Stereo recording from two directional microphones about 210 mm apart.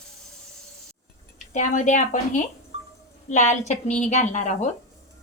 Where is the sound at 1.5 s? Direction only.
35° left (ahead or behind).